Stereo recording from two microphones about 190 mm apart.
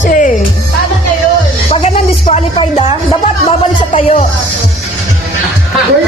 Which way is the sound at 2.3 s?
30° left (ahead or behind).